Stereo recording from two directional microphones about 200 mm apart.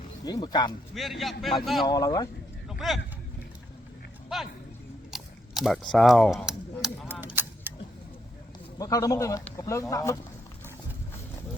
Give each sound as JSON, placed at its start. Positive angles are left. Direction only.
{"t": 0.3, "sound": "speech", "side_deg": 20}
{"t": 0.9, "sound": "a man's voice", "side_deg": 0}
{"t": 1.9, "sound": "speech", "side_deg": 20}
{"t": 2.6, "sound": "speech", "side_deg": 0}
{"t": 4.3, "sound": "a man's voice", "side_deg": 0}
{"t": 5.1, "sound": "biting", "side_deg": 0}
{"t": 5.9, "sound": "a sound", "side_deg": 0}
{"t": 8.8, "sound": "speech", "side_deg": 20}